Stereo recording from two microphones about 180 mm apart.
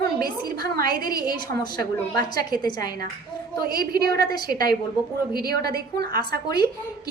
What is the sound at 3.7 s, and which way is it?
A woman's voice, 60° right (ahead or behind).